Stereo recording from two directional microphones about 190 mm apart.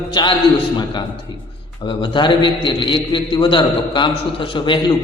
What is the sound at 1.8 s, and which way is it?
A man's voice, 25° left (ahead or behind).